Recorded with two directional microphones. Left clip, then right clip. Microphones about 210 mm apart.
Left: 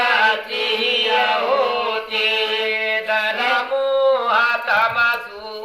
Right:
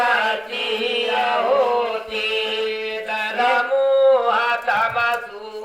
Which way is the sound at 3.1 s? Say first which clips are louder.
Right 2 dB; 55° right (ahead or behind).